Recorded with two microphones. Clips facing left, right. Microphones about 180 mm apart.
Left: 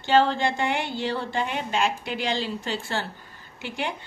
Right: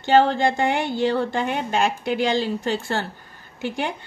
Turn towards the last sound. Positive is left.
turn(degrees=-45)  # may be behind; listen again after turning